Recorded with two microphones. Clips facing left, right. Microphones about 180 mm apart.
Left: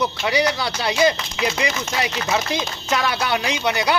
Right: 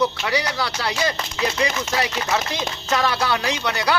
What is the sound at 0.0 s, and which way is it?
Speech, 20° left (ahead or behind).